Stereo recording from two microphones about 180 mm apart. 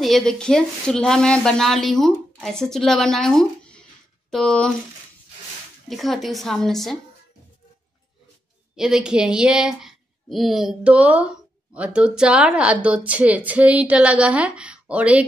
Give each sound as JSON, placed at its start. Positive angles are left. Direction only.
{"t": 0.0, "sound": "speech", "side_deg": 0}
{"t": 5.9, "sound": "speech", "side_deg": 0}
{"t": 8.7, "sound": "a woman's voice", "side_deg": -5}